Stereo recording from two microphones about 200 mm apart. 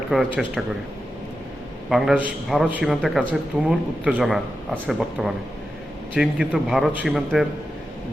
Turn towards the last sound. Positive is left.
turn(degrees=0)  # may be behind; listen again after turning